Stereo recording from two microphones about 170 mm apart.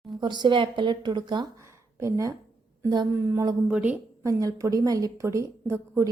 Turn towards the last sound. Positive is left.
turn(degrees=-15)  # may be behind; listen again after turning